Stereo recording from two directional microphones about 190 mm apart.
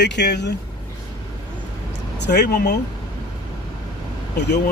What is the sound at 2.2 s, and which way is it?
Speech, 60° left (ahead or behind).